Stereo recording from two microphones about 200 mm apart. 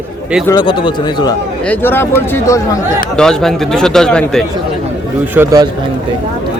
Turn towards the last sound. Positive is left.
turn(degrees=-15)  # may be behind; listen again after turning